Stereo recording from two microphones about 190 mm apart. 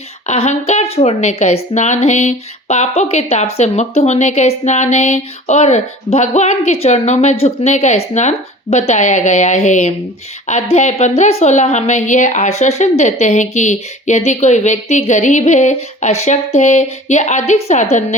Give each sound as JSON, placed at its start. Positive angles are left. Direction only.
{"t": 0.3, "sound": "a woman's voice", "side_deg": 35}